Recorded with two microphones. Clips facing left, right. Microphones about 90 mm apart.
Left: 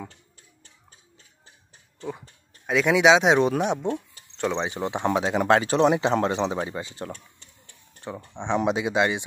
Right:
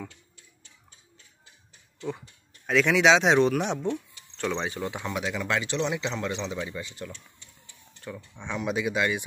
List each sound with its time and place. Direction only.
2.0 s speech: 40° left (ahead or behind)
2.6 s speech: 10° left (ahead or behind)
3.8 s speech: 40° left (ahead or behind)
4.4 s speech: 25° left (ahead or behind); by 8.0 s 50° left (ahead or behind)
8.3 s speech: 25° left (ahead or behind)